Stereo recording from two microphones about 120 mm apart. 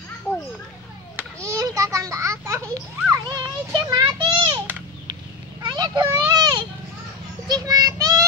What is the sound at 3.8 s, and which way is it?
Child singing, 30° right (ahead or behind).